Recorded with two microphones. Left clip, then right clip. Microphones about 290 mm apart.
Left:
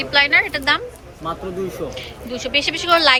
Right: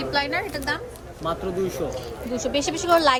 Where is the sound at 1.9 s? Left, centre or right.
Centre.